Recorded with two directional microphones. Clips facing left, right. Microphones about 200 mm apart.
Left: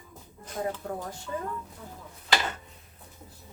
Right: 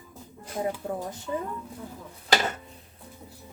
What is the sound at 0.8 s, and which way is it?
Speech, 20° right (ahead or behind).